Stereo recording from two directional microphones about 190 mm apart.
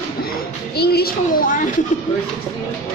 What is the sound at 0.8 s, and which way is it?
Speech, 55° left (ahead or behind).